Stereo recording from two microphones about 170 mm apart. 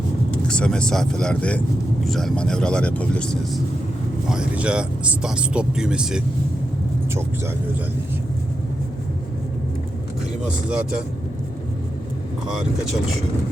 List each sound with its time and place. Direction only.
0.4 s speech: 5° left (ahead or behind)
4.3 s speech: 5° right (ahead or behind)
7.1 s speech: 15° right (ahead or behind)
10.4 s speech: 5° right (ahead or behind)